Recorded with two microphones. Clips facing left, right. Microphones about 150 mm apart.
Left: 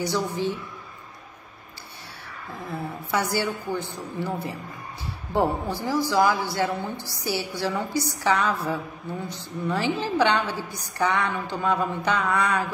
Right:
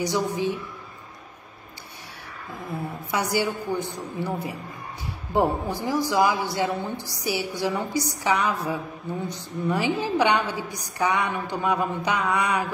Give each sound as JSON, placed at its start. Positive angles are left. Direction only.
{"t": 0.0, "sound": "a woman's voice", "side_deg": -15}
{"t": 2.7, "sound": "a woman's voice", "side_deg": -15}